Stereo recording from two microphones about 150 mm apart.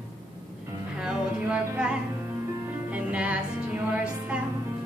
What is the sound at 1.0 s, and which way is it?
Music, 5° right (ahead or behind).